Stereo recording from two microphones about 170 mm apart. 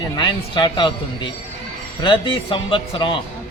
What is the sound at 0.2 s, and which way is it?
A man's voice, 25° left (ahead or behind).